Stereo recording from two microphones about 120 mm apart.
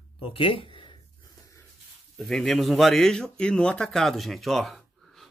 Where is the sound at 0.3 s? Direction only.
45° left (ahead or behind).